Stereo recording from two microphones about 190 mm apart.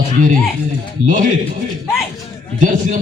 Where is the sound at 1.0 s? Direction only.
40° right (ahead or behind).